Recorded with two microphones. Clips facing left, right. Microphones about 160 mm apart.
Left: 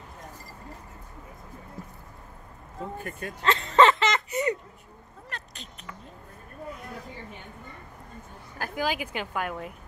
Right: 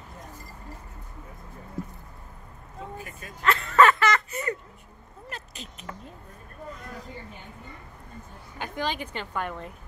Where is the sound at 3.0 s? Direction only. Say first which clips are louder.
Left 5 dB; 55° left (ahead or behind).